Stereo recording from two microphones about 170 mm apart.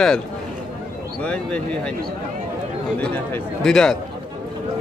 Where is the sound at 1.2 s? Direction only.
5° left (ahead or behind).